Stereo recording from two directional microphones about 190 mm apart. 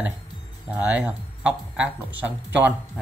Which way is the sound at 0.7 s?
5° right (ahead or behind).